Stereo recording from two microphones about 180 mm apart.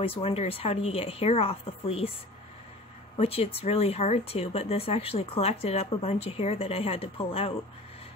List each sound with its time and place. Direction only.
0.0 s speech: 35° left (ahead or behind)
3.2 s speech: 35° left (ahead or behind)